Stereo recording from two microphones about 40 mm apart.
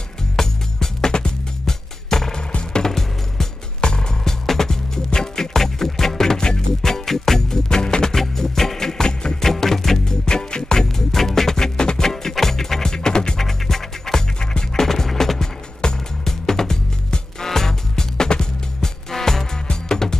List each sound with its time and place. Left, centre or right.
0.4 s music: centre
13.4 s music: centre